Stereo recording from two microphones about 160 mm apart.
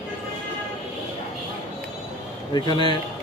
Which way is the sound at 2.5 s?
30° left (ahead or behind).